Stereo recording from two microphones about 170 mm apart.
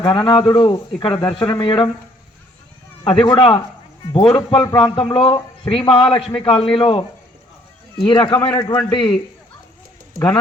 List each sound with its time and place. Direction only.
0.0 s a man's voice: 30° left (ahead or behind)
3.2 s a man's voice: 30° left (ahead or behind)
8.0 s a man's voice: 30° left (ahead or behind)
8.5 s a man's voice: 15° left (ahead or behind)
8.9 s a man's voice: 30° left (ahead or behind)